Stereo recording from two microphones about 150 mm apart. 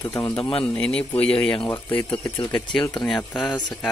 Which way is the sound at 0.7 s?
5° left (ahead or behind).